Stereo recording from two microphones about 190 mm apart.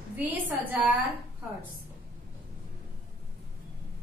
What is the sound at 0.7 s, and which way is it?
Speech, 10° right (ahead or behind).